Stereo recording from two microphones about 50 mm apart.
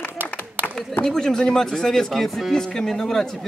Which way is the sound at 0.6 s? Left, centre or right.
Right.